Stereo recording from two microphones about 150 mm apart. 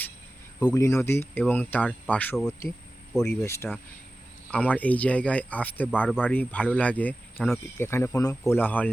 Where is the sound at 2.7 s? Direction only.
5° left (ahead or behind).